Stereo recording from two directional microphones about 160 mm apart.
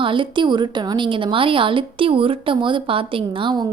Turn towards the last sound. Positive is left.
turn(degrees=-30)  # may be behind; listen again after turning